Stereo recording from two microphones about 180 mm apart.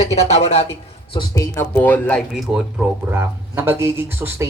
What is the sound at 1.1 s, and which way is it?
Speech, 20° left (ahead or behind).